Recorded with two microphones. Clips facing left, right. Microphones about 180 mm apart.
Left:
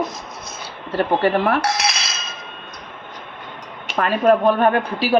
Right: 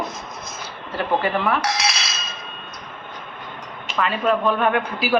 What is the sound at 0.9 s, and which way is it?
Speech, 35° left (ahead or behind).